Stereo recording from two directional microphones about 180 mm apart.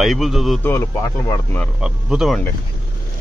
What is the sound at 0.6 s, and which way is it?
Speech, 15° left (ahead or behind).